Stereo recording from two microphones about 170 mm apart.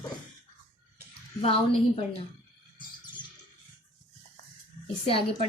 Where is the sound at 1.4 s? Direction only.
35° left (ahead or behind).